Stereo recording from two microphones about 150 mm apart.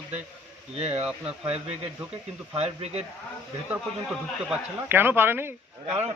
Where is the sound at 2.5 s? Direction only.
45° right (ahead or behind).